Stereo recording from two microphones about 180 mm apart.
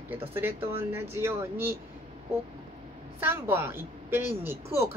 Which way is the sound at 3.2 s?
10° right (ahead or behind).